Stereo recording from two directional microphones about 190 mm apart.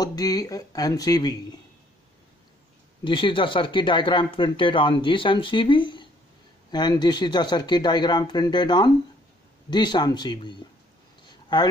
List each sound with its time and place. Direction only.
0.0 s speech: 20° left (ahead or behind)
3.0 s speech: 25° left (ahead or behind)
11.2 s a sound: 25° left (ahead or behind)